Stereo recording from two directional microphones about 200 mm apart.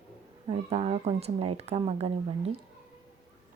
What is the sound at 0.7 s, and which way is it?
Speech, 30° right (ahead or behind).